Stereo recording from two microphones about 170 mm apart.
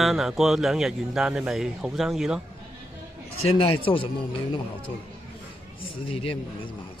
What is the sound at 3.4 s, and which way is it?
Speech, 30° left (ahead or behind).